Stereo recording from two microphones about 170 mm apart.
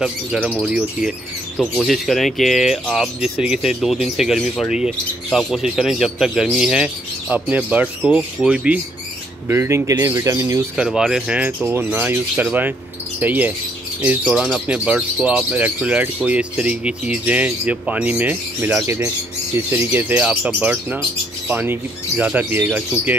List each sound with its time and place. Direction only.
0.0 s speech: 5° right (ahead or behind); by 10.6 s 20° right (ahead or behind)
10.8 s speech: 5° right (ahead or behind)